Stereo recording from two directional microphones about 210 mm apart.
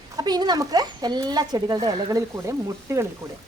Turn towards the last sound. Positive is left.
turn(degrees=-15)  # may be behind; listen again after turning